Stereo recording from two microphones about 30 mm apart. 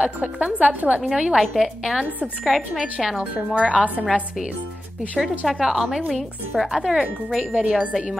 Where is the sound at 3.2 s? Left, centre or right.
Right.